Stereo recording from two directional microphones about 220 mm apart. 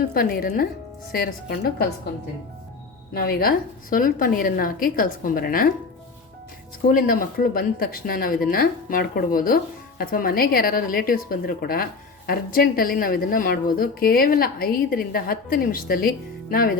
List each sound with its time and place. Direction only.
0.1 s a woman's voice: 40° left (ahead or behind)
3.2 s a woman's voice: 45° left (ahead or behind)
6.8 s a woman's voice: 40° left (ahead or behind)